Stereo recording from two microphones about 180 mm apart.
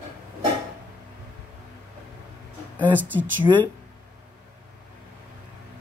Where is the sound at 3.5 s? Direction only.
25° right (ahead or behind).